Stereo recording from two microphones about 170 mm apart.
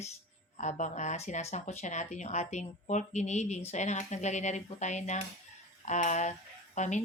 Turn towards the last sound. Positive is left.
turn(degrees=45)  # may be behind; listen again after turning